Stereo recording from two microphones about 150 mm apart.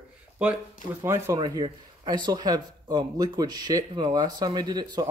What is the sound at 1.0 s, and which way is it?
Speech, 15° right (ahead or behind).